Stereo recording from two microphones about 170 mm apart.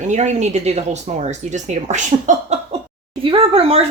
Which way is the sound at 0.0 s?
45° right (ahead or behind).